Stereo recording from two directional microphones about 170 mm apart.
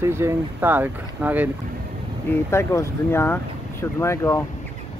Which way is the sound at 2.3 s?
15° left (ahead or behind).